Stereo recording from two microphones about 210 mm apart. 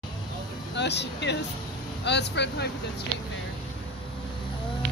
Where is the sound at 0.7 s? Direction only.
55° left (ahead or behind).